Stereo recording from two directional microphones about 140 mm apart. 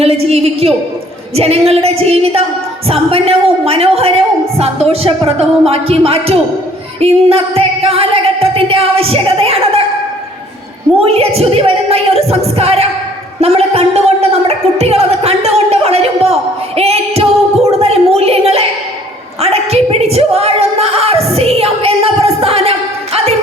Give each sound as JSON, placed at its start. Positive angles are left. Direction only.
{"t": 0.0, "sound": "music", "side_deg": -45}
{"t": 11.0, "sound": "music", "side_deg": -45}
{"t": 13.4, "sound": "speech", "side_deg": -50}
{"t": 16.7, "sound": "a sound", "side_deg": -45}